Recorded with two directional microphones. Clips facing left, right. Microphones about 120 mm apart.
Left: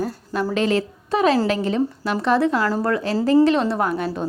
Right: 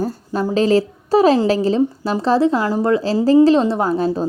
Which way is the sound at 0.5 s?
35° right (ahead or behind).